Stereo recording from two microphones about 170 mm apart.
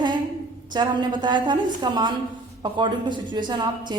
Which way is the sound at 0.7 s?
25° right (ahead or behind).